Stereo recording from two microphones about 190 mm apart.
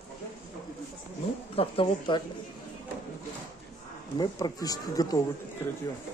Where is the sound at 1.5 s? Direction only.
30° left (ahead or behind).